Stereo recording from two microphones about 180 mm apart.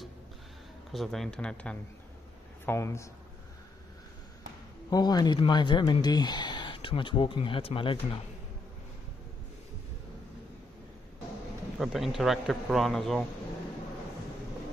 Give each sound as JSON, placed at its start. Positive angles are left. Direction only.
{"t": 0.9, "sound": "a man's voice", "side_deg": 0}
{"t": 4.8, "sound": "a man's voice", "side_deg": 25}
{"t": 11.8, "sound": "a man's voice", "side_deg": 0}